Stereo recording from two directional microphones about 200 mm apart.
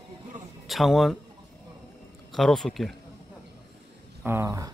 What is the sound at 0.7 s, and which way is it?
Speech, centre (ahead or behind).